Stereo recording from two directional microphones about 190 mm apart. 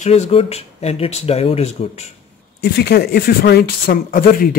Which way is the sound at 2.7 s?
55° left (ahead or behind).